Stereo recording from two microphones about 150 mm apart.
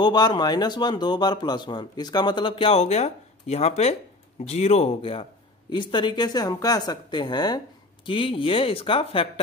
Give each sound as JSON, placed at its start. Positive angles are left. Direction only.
{"t": 0.0, "sound": "a woman's voice", "side_deg": 30}